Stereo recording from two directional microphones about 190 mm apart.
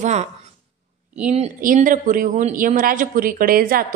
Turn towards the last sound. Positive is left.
turn(degrees=-50)  # may be behind; listen again after turning